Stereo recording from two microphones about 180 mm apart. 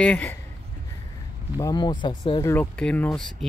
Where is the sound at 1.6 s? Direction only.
25° left (ahead or behind).